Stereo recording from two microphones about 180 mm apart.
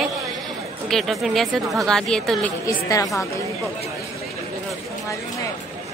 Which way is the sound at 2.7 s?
15° left (ahead or behind).